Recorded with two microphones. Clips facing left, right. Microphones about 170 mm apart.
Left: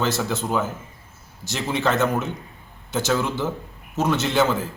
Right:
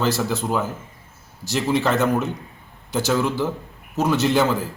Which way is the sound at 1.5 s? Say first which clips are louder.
Right 2 dB; centre (ahead or behind).